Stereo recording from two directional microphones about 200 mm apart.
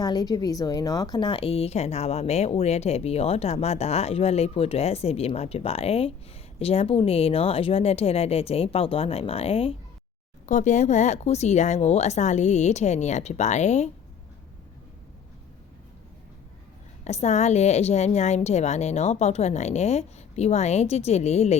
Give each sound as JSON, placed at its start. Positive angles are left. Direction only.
{"t": 0.0, "sound": "a woman's voice", "side_deg": 20}
{"t": 17.0, "sound": "a woman's voice", "side_deg": 35}